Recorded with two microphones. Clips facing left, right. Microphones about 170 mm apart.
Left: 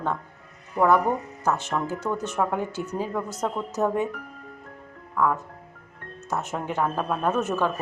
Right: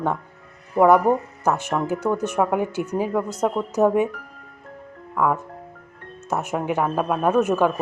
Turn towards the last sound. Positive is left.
turn(degrees=-15)  # may be behind; listen again after turning